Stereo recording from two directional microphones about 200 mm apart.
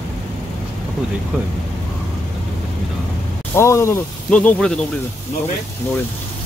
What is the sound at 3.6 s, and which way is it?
Speech, 15° left (ahead or behind).